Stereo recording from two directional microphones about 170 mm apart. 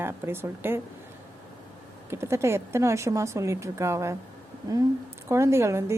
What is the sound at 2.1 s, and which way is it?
Speech, 15° right (ahead or behind).